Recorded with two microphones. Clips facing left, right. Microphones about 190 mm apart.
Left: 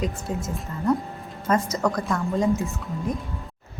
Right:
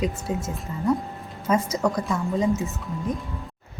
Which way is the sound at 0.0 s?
5° right (ahead or behind).